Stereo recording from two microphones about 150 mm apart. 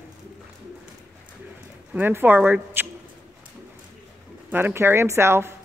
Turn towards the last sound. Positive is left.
turn(degrees=-15)  # may be behind; listen again after turning